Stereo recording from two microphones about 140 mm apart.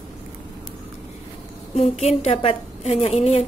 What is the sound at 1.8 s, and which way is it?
A woman's voice, 50° left (ahead or behind).